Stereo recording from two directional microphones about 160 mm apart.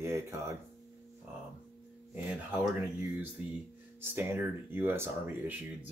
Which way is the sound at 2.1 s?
10° right (ahead or behind).